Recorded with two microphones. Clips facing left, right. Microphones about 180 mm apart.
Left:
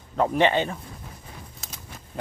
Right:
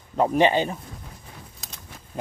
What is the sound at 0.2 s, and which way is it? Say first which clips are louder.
Speech: right 2 dB; 15° right (ahead or behind).